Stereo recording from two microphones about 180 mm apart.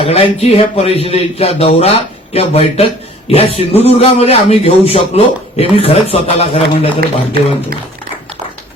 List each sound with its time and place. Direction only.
0.0 s a man's voice: 35° left (ahead or behind)